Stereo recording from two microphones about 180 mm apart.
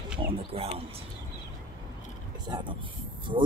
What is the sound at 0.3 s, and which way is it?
Speech, 35° right (ahead or behind).